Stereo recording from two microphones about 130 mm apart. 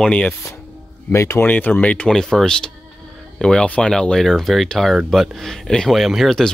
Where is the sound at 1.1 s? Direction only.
20° left (ahead or behind).